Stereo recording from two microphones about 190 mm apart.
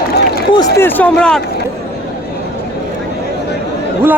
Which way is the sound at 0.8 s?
10° left (ahead or behind).